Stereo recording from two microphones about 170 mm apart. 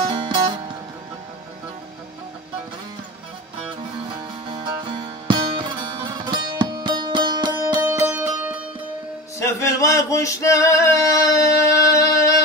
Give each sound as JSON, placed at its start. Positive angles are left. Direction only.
{"t": 0.1, "sound": "music", "side_deg": -30}
{"t": 4.1, "sound": "music", "side_deg": -30}
{"t": 9.4, "sound": "male singing", "side_deg": 15}